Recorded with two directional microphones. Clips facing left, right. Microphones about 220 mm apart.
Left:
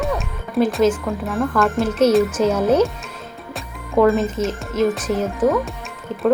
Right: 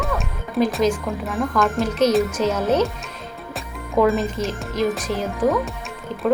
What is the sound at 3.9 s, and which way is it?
Speech, centre (ahead or behind).